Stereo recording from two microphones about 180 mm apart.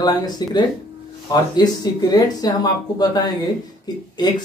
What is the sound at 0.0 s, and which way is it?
Speech, 20° left (ahead or behind).